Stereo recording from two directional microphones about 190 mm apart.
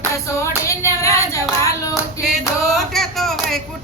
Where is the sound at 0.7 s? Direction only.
15° left (ahead or behind).